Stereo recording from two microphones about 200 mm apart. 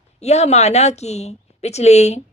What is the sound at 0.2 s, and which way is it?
A woman's voice, 35° left (ahead or behind).